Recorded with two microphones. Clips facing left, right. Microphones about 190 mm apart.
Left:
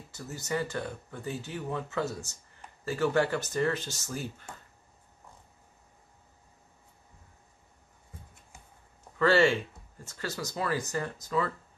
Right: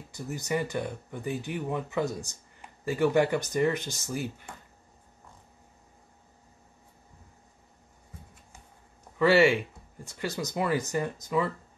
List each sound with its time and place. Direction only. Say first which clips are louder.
0.1 s speech: right 3 dB; 15° right (ahead or behind)
9.2 s speech: right 2 dB; 10° right (ahead or behind)